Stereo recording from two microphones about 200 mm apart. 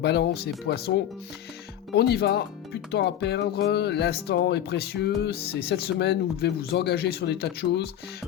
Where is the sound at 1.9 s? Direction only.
55° left (ahead or behind).